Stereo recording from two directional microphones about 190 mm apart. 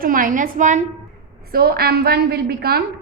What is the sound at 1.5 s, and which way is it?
A woman's voice, 55° right (ahead or behind).